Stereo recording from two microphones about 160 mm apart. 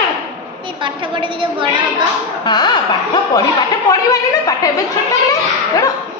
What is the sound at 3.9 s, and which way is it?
Speech, 20° left (ahead or behind).